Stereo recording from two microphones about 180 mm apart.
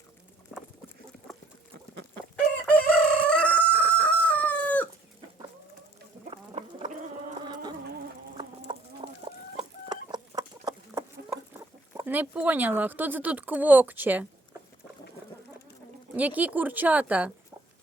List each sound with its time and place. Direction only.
0.5 s bird: centre (ahead or behind)
2.7 s chicken: 5° left (ahead or behind)
6.3 s a sound: 30° right (ahead or behind)
7.4 s insect: 25° right (ahead or behind)
8.4 s chicken: 30° right (ahead or behind)
11.9 s speech: 10° right (ahead or behind)
16.1 s speech: 10° right (ahead or behind)